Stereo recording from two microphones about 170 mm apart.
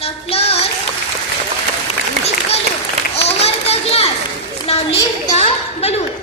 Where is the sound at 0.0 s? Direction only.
35° left (ahead or behind).